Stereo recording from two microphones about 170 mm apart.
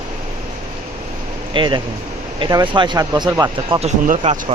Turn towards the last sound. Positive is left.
turn(degrees=-35)  # may be behind; listen again after turning